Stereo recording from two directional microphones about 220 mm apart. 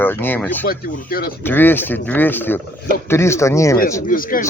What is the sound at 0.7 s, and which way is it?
Speech, 40° left (ahead or behind).